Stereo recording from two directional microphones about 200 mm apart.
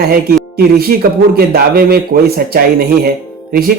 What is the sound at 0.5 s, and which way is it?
Speech, 50° right (ahead or behind).